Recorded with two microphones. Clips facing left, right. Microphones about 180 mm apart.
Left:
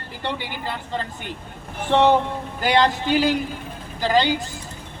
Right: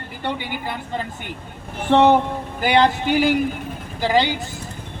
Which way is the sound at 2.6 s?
15° right (ahead or behind).